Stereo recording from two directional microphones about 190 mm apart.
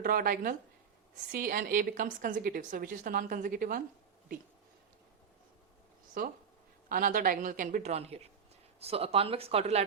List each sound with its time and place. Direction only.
0.0 s a woman's voice: 50° right (ahead or behind)
6.2 s a woman's voice: 45° right (ahead or behind)